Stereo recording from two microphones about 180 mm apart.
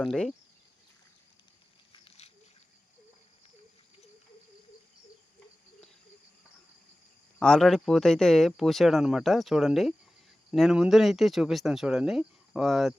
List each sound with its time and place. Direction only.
0.0 s speech: centre (ahead or behind)
1.9 s a sound: 30° left (ahead or behind)
7.3 s speech: 5° left (ahead or behind)